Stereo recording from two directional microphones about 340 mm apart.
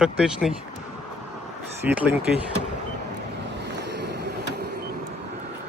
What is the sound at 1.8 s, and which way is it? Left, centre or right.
Speech, centre.